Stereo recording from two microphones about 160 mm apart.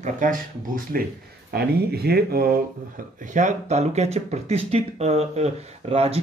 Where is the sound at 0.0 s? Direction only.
55° right (ahead or behind).